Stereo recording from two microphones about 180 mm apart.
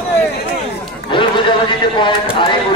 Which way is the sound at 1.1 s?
25° left (ahead or behind).